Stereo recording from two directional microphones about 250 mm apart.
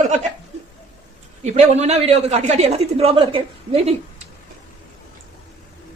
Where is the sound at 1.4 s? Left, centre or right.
Right.